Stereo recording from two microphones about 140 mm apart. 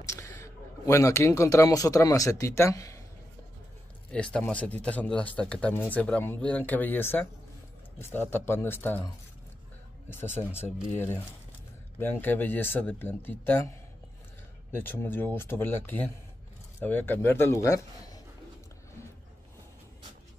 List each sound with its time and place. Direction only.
0.0 s speech: 20° left (ahead or behind)
4.1 s speech: 10° left (ahead or behind)
10.3 s speech: 50° left (ahead or behind)
12.0 s speech: 15° left (ahead or behind)